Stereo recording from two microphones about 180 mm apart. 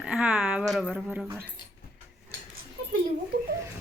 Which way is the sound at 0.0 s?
5° right (ahead or behind).